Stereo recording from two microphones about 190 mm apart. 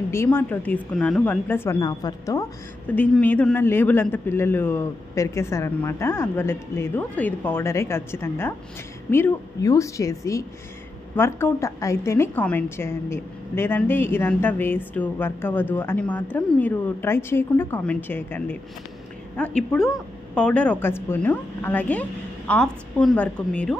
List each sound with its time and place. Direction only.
0.1 s a woman's voice: 15° left (ahead or behind)